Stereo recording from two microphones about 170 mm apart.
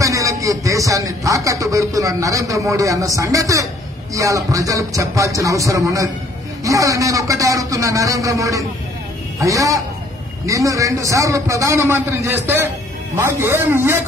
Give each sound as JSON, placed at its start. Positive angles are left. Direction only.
{"t": 0.0, "sound": "speech", "side_deg": -20}